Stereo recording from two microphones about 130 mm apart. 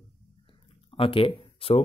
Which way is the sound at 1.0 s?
45° left (ahead or behind).